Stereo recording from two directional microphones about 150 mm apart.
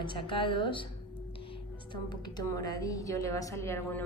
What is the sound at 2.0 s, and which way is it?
A woman's voice, 25° left (ahead or behind).